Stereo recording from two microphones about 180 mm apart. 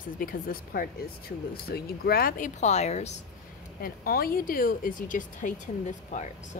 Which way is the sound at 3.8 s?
55° left (ahead or behind).